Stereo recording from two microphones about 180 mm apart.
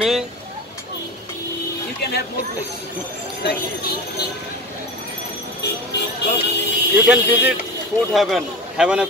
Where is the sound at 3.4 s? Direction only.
65° left (ahead or behind).